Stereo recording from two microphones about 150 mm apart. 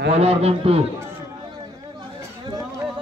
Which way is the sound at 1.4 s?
30° right (ahead or behind).